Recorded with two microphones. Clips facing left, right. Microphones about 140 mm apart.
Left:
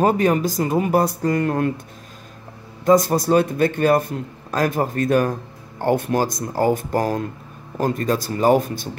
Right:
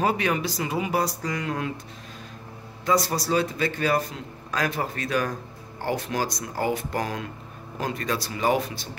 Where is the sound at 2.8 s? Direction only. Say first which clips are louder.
Left 8 dB; 45° left (ahead or behind).